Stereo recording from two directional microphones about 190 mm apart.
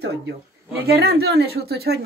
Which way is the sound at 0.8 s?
55° right (ahead or behind).